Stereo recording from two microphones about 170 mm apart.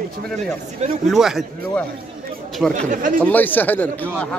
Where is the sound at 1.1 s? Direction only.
Centre (ahead or behind).